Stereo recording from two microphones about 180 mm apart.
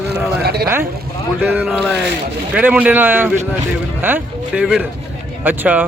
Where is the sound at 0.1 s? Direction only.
60° right (ahead or behind).